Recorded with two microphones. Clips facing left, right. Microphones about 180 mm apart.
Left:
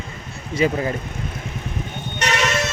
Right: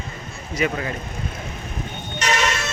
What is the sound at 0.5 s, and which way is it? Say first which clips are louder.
Speech: left 4 dB; 30° left (ahead or behind).